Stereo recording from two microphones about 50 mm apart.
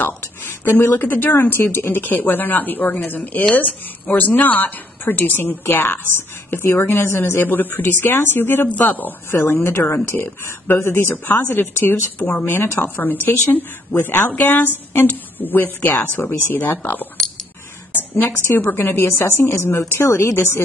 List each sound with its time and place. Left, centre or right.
0.4 s a sound: left
0.9 s speech: left
7.4 s speech: left
9.9 s speech: left
12.2 s speech: left
12.5 s a woman's voice: left